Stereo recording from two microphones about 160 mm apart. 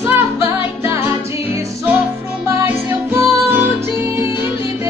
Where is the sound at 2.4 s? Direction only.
15° right (ahead or behind).